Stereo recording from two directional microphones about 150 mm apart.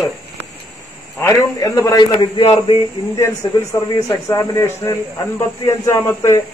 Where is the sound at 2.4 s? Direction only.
40° left (ahead or behind).